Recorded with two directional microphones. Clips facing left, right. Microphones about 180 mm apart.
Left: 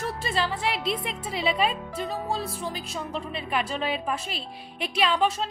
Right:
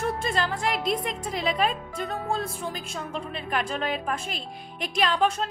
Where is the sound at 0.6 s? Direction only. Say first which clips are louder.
Right 2 dB; 45° right (ahead or behind).